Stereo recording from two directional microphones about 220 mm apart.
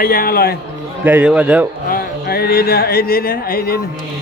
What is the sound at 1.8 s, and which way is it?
Speech, 45° left (ahead or behind).